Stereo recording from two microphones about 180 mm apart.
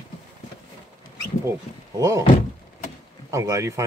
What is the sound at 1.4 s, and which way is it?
Speech, 15° right (ahead or behind).